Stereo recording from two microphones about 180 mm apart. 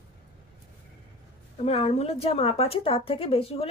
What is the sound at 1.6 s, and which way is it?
A woman's voice, 35° left (ahead or behind).